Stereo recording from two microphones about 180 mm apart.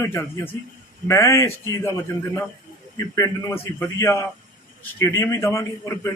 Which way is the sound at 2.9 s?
20° left (ahead or behind).